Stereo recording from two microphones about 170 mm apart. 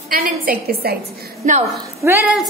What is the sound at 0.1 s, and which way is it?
Speech, 60° right (ahead or behind).